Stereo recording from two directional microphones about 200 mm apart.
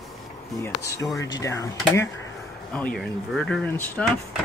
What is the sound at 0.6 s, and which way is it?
Speech, 15° left (ahead or behind).